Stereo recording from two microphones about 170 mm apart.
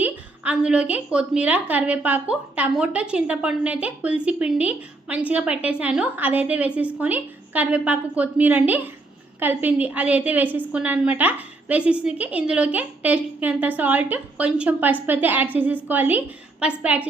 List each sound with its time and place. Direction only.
0.0 s a woman's voice: 5° right (ahead or behind)